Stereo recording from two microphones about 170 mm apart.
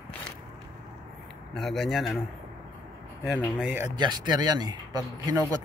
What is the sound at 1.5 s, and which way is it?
Speech, centre (ahead or behind).